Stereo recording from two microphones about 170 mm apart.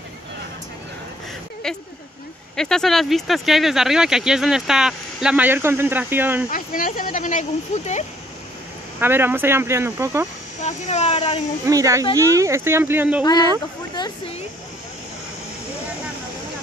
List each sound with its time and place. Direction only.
2.5 s speech: 5° left (ahead or behind)
6.5 s speech: 55° left (ahead or behind)
9.0 s speech: 15° right (ahead or behind)
10.6 s speech: 40° left (ahead or behind)
11.6 s speech: 20° right (ahead or behind)
13.2 s speech: 25° left (ahead or behind)